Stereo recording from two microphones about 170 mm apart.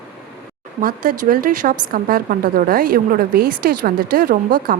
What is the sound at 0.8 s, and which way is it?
Speech, 55° right (ahead or behind).